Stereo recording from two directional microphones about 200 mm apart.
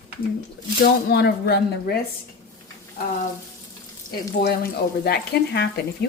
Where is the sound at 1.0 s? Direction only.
50° left (ahead or behind).